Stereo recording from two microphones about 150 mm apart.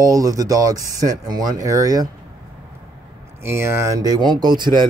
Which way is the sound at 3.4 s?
15° right (ahead or behind).